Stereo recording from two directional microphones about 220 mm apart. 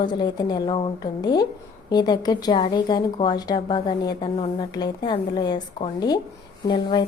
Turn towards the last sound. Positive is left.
turn(degrees=20)  # may be behind; listen again after turning